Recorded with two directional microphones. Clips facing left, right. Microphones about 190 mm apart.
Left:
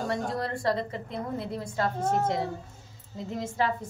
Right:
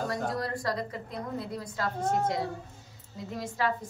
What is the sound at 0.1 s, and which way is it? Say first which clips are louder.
A woman's voice: left 1 dB; 25° left (ahead or behind).